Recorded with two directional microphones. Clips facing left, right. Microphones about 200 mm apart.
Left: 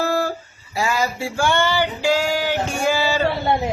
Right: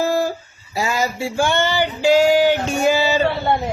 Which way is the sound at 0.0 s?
15° right (ahead or behind).